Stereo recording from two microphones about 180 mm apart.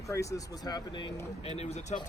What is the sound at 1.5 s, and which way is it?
Speech, 40° left (ahead or behind).